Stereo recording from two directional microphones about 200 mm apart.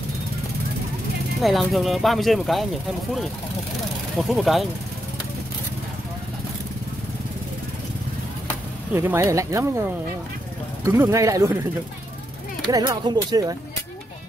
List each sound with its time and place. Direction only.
1.4 s speech: centre (ahead or behind)
4.2 s speech: centre (ahead or behind)
8.9 s speech: 10° right (ahead or behind)
12.7 s speech: 20° right (ahead or behind)